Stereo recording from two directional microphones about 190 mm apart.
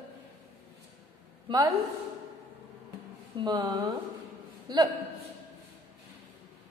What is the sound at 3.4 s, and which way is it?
Speech, 20° right (ahead or behind).